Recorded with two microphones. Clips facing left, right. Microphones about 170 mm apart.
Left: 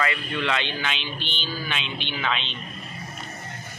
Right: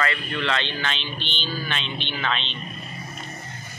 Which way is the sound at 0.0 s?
15° left (ahead or behind).